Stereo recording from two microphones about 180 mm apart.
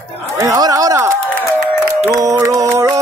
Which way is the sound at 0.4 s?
20° right (ahead or behind).